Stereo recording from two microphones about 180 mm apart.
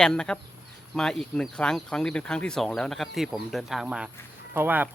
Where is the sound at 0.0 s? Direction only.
5° left (ahead or behind).